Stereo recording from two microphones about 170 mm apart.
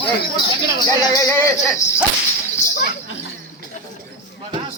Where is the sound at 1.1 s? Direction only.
20° left (ahead or behind).